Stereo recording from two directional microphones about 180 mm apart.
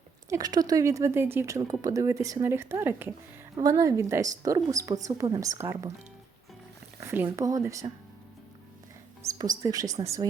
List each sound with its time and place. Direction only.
0.3 s a woman's voice: 20° right (ahead or behind)
7.0 s a woman's voice: 10° right (ahead or behind)
9.2 s speech: 20° right (ahead or behind)